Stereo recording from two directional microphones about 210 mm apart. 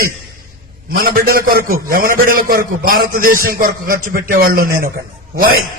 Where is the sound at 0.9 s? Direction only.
45° right (ahead or behind).